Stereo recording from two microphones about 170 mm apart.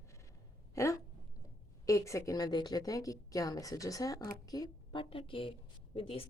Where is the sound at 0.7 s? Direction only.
20° left (ahead or behind).